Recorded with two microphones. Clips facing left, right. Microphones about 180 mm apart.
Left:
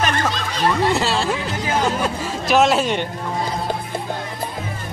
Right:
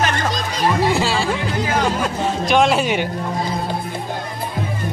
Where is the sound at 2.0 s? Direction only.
5° left (ahead or behind).